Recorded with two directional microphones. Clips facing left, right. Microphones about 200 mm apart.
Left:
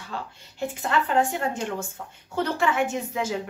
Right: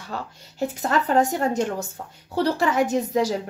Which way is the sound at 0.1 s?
40° right (ahead or behind).